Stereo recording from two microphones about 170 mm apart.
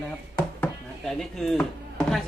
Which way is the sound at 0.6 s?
5° left (ahead or behind).